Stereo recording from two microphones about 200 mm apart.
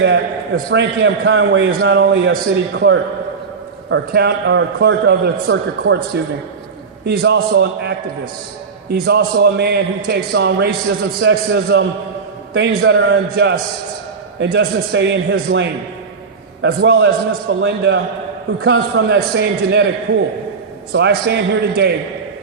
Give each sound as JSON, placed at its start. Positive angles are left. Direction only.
{"t": 0.0, "sound": "a man's voice", "side_deg": -60}
{"t": 3.8, "sound": "a man's voice", "side_deg": -60}
{"t": 20.9, "sound": "a man's voice", "side_deg": -55}